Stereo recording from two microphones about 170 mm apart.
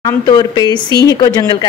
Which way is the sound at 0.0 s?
25° left (ahead or behind).